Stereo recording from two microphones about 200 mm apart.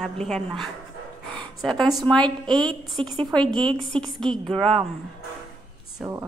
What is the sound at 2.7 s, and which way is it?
Speech, 20° right (ahead or behind).